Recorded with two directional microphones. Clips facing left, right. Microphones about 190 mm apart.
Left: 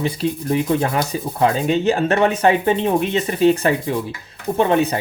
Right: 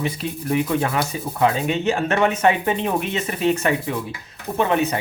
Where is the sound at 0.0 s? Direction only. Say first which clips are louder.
Left 4 dB; 30° left (ahead or behind).